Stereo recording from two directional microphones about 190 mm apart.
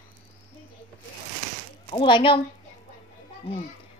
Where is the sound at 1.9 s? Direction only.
25° left (ahead or behind).